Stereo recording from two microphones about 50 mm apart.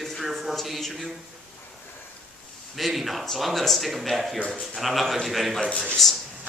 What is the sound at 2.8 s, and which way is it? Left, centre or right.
A man's voice, centre.